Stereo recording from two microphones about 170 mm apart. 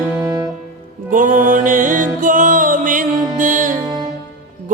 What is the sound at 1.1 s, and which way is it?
Music, 50° right (ahead or behind).